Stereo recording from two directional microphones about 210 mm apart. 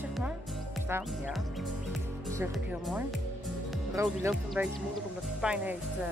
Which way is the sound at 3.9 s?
15° right (ahead or behind).